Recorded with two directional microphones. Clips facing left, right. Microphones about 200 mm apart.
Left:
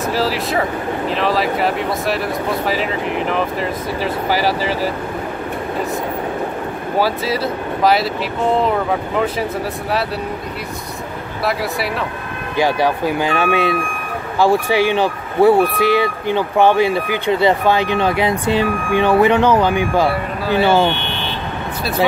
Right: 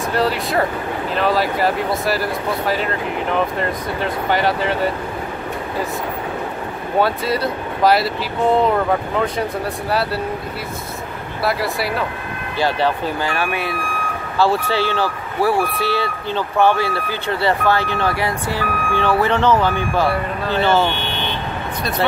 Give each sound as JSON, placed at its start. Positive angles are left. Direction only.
{"t": 0.1, "sound": "speech", "side_deg": 0}
{"t": 7.0, "sound": "speech", "side_deg": 0}
{"t": 9.2, "sound": "speech", "side_deg": 0}
{"t": 11.4, "sound": "speech", "side_deg": 0}
{"t": 12.5, "sound": "speech", "side_deg": 15}